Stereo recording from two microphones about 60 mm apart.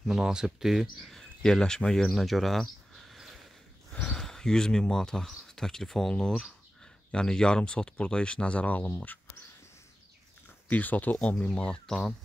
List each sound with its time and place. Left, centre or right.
0.1 s speech: centre
3.9 s a sound: left
4.2 s speech: centre; by 8.9 s left
10.7 s speech: left
11.1 s speech: centre
11.9 s speech: centre